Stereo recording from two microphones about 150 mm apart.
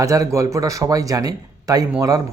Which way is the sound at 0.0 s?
20° right (ahead or behind).